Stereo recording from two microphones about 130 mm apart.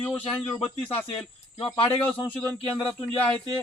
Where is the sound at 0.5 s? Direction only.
40° left (ahead or behind).